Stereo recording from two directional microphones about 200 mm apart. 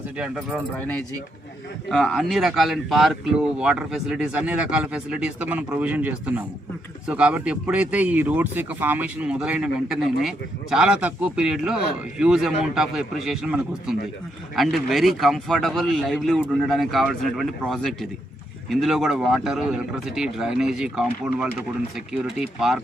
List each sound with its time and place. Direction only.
0.8 s speech: 10° left (ahead or behind)